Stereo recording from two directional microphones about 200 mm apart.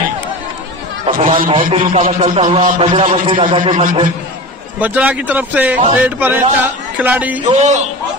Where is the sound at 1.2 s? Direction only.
45° right (ahead or behind).